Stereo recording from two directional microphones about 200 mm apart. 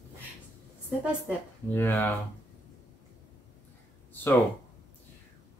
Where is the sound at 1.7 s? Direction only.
10° left (ahead or behind).